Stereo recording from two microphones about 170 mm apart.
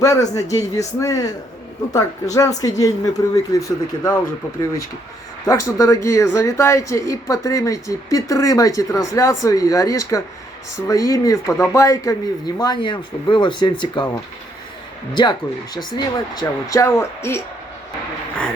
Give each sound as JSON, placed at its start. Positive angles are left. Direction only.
{"t": 0.0, "sound": "speech", "side_deg": 20}
{"t": 5.5, "sound": "speech", "side_deg": 20}
{"t": 15.1, "sound": "speech", "side_deg": 25}